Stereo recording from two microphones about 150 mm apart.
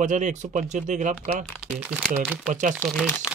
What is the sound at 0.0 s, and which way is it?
Speech, 55° right (ahead or behind).